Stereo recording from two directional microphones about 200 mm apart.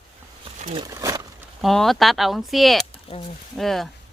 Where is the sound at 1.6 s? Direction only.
Centre (ahead or behind).